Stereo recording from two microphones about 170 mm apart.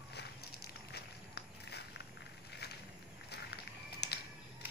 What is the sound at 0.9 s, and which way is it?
Walk, 75° left (ahead or behind).